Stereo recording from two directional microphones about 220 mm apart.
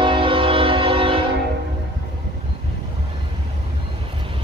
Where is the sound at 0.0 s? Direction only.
25° right (ahead or behind).